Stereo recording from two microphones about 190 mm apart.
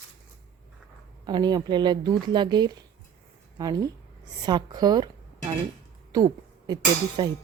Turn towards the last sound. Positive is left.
turn(degrees=-20)  # may be behind; listen again after turning